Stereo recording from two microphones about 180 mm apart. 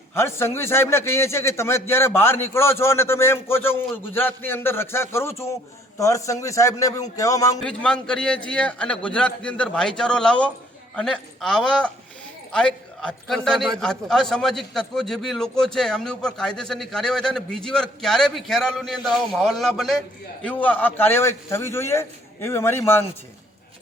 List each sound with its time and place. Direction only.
0.1 s a man's voice: 15° left (ahead or behind)
7.6 s a man's voice: 5° left (ahead or behind)